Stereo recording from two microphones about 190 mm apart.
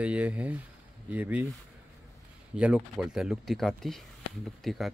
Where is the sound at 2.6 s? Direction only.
5° right (ahead or behind).